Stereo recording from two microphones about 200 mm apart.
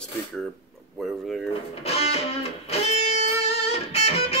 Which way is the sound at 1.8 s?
30° left (ahead or behind).